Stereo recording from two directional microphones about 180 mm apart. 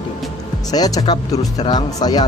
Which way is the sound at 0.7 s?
20° left (ahead or behind).